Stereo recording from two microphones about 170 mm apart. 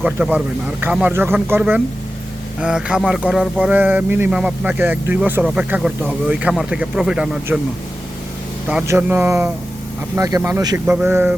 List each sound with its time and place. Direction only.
0.0 s speech: 5° right (ahead or behind)
8.7 s speech: 10° right (ahead or behind)